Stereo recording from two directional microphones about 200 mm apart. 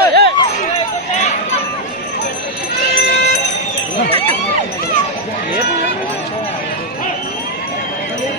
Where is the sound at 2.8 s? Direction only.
50° left (ahead or behind).